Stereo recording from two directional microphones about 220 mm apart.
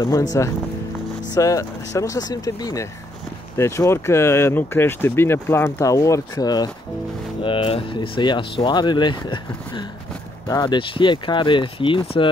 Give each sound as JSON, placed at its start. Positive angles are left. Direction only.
{"t": 0.3, "sound": "speech", "side_deg": 15}